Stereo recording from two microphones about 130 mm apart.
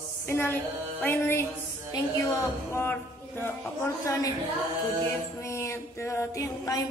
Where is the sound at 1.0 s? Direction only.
20° left (ahead or behind).